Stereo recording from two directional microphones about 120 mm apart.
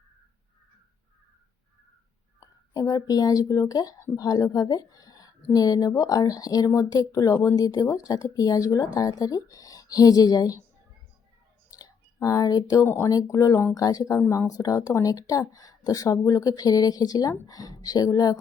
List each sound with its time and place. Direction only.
2.7 s speech: 30° left (ahead or behind)
11.8 s a sound: 30° left (ahead or behind)
12.8 s speech: 25° left (ahead or behind)